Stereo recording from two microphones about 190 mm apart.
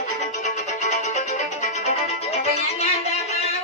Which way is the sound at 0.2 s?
40° left (ahead or behind).